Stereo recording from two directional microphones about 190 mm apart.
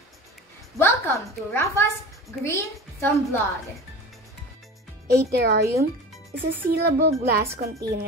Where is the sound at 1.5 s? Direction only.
15° left (ahead or behind).